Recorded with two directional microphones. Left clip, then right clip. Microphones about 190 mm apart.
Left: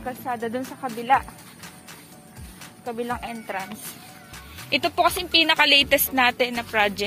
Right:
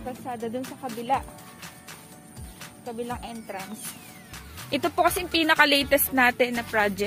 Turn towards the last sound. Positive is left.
turn(degrees=-25)  # may be behind; listen again after turning